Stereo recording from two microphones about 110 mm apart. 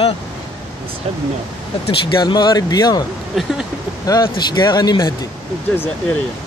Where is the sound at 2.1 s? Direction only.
45° left (ahead or behind).